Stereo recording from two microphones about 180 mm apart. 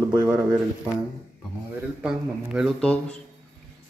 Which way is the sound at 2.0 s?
5° right (ahead or behind).